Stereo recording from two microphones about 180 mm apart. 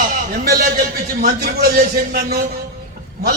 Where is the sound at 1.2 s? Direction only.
55° right (ahead or behind).